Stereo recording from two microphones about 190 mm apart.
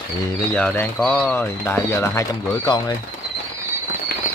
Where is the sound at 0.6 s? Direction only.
5° left (ahead or behind).